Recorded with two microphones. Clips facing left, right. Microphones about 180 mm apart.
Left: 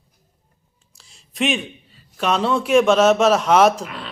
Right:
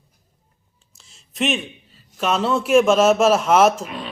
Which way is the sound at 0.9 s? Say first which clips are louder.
Left 1 dB; centre (ahead or behind).